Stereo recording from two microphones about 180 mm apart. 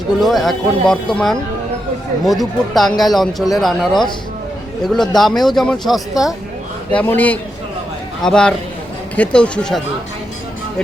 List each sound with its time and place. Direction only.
0.2 s speech: centre (ahead or behind)
6.9 s a man's voice: 10° left (ahead or behind)